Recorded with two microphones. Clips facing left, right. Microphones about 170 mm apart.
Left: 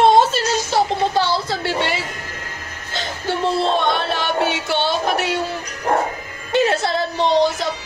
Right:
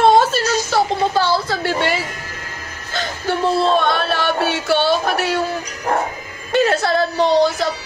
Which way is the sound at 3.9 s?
20° left (ahead or behind).